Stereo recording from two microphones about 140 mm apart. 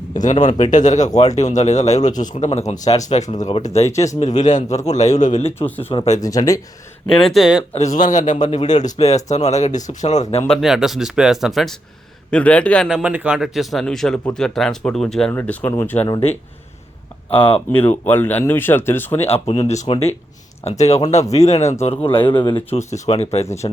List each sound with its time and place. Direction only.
0.1 s a man's voice: 65° left (ahead or behind)
2.5 s speech: 50° left (ahead or behind)
3.8 s speech: 20° left (ahead or behind)
4.2 s speech: 60° left (ahead or behind)
5.5 s speech: 15° left (ahead or behind)
7.2 s speech: centre (ahead or behind)
7.7 s speech: 50° left (ahead or behind)
7.9 s speech: 65° left (ahead or behind)
10.4 s speech: centre (ahead or behind)
12.9 s speech: 10° right (ahead or behind); by 16.0 s 15° left (ahead or behind)
17.3 s speech: 40° left (ahead or behind)
17.7 s speech: 15° left (ahead or behind)
19.2 s speech: 45° left (ahead or behind)
22.9 s speech: 50° left (ahead or behind)